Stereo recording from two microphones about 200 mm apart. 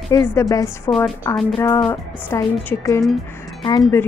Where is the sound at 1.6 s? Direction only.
15° left (ahead or behind).